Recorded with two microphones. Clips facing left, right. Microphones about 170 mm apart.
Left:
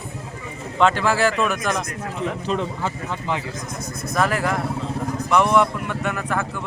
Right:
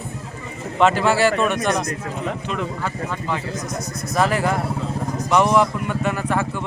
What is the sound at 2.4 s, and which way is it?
Speech, 35° left (ahead or behind).